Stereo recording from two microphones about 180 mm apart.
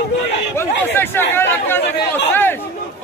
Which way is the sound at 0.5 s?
10° left (ahead or behind).